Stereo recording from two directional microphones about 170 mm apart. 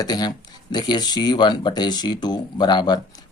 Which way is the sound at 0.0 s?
25° left (ahead or behind).